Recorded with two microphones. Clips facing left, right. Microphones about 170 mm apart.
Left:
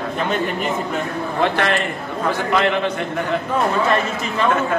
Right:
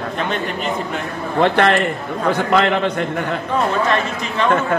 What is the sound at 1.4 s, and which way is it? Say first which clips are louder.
A man's voice: right 5 dB; 55° right (ahead or behind).